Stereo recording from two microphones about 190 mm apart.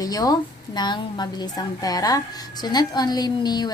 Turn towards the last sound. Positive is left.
turn(degrees=20)  # may be behind; listen again after turning